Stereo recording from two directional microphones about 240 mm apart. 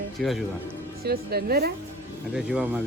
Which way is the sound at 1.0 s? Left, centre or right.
Right.